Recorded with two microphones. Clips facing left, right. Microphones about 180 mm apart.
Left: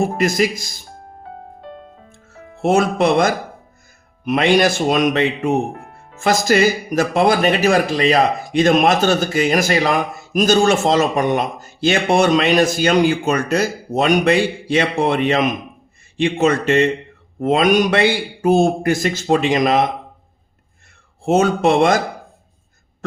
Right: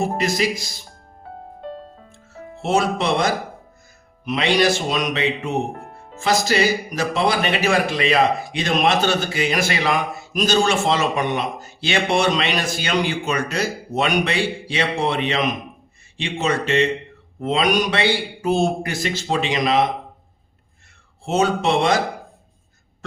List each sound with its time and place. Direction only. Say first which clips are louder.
0.2 s a man's voice: left 4 dB; 50° left (ahead or behind)
2.6 s a man's voice: left 5 dB; 50° left (ahead or behind)
21.2 s a man's voice: left 5 dB; 50° left (ahead or behind)